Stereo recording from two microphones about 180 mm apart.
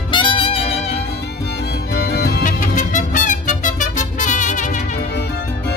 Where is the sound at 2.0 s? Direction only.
60° left (ahead or behind).